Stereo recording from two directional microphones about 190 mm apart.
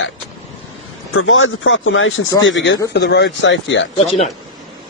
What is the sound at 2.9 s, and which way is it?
Speech, 65° left (ahead or behind).